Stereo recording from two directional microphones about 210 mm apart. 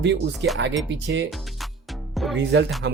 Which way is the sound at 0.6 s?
55° right (ahead or behind).